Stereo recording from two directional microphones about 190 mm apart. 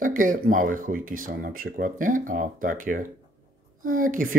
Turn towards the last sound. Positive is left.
turn(degrees=-45)  # may be behind; listen again after turning